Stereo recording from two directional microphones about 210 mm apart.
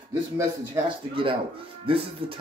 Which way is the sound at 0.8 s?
15° right (ahead or behind).